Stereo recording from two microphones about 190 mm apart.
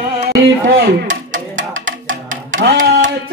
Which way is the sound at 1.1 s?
85° right.